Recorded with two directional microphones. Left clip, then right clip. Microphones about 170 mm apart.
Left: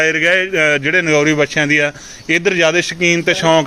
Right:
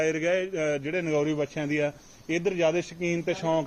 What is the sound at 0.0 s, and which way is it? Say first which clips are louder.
A man's voice: left 13 dB; 5° right (ahead or behind).